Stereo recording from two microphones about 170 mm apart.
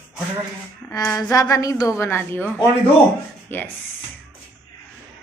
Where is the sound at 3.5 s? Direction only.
10° left (ahead or behind).